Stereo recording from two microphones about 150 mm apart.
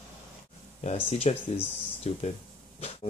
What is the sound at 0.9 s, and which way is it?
Speech, 45° left (ahead or behind).